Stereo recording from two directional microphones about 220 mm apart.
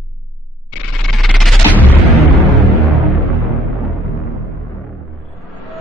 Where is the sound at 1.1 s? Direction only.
Centre (ahead or behind).